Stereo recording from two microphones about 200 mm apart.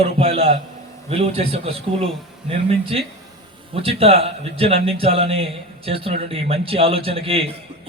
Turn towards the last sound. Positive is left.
turn(degrees=-30)  # may be behind; listen again after turning